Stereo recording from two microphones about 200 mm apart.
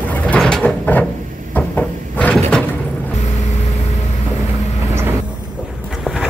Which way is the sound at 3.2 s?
35° left (ahead or behind).